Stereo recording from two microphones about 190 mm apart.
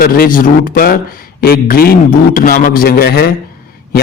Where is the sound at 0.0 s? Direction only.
50° left (ahead or behind).